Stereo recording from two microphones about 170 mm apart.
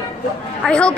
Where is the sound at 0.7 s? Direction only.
5° left (ahead or behind).